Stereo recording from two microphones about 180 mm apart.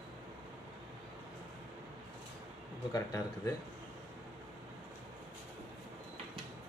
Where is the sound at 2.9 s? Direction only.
20° left (ahead or behind).